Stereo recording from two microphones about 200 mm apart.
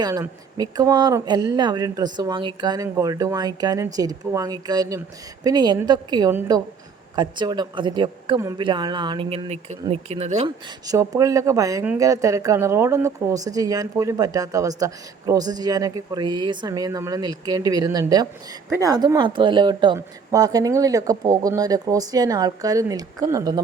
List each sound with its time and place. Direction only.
0.0 s speech: 20° right (ahead or behind)
10.8 s speech: 15° right (ahead or behind)